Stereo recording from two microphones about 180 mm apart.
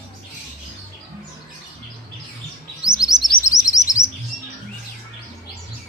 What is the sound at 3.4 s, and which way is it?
Chirp, 20° left (ahead or behind).